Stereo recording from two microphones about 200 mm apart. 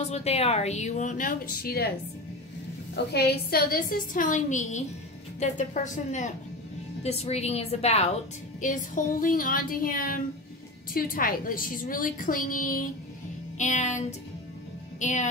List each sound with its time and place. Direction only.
0.0 s a woman's voice: 30° left (ahead or behind); by 1.9 s 50° left (ahead or behind)
3.1 s a woman's voice: 55° left (ahead or behind); by 5.6 s 35° left (ahead or behind)
7.0 s a woman's voice: 30° left (ahead or behind)